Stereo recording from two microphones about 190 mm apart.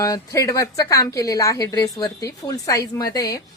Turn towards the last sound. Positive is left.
turn(degrees=20)  # may be behind; listen again after turning